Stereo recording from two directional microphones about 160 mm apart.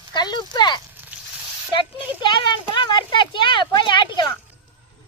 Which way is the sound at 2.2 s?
30° left (ahead or behind).